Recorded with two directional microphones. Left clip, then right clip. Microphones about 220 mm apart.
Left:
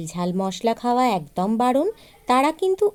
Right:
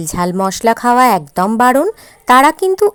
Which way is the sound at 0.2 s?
25° right (ahead or behind).